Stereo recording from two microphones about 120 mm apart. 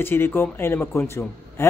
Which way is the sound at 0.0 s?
20° left (ahead or behind).